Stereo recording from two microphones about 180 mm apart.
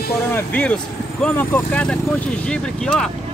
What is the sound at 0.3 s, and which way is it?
Speech, 10° left (ahead or behind).